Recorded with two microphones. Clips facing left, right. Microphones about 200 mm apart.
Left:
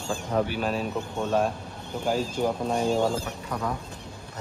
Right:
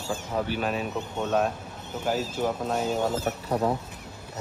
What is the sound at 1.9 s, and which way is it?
Speech, 5° right (ahead or behind).